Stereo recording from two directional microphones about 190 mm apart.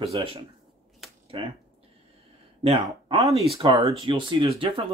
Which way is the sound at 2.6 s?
30° right (ahead or behind).